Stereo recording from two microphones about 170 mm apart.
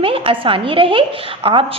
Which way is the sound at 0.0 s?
30° right (ahead or behind).